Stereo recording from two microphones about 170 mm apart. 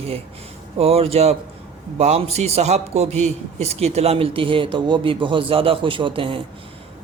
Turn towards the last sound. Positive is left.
turn(degrees=-30)  # may be behind; listen again after turning